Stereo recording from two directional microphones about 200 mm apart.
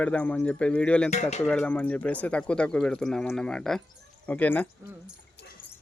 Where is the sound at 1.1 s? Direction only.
35° left (ahead or behind).